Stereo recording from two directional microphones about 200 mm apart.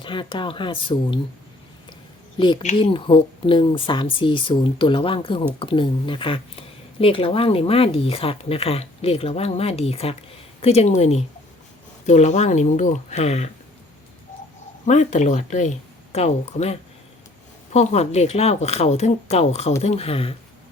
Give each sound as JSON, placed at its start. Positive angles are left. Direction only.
{"t": 0.0, "sound": "speech", "side_deg": 25}
{"t": 2.4, "sound": "a woman's voice", "side_deg": 25}
{"t": 14.8, "sound": "a woman's voice", "side_deg": 35}